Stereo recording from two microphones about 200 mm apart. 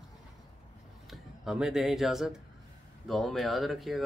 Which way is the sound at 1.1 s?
5° right (ahead or behind).